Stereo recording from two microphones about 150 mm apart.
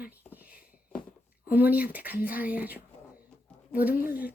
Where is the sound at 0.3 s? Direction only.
10° right (ahead or behind).